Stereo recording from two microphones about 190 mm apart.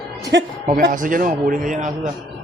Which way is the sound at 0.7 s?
45° right (ahead or behind).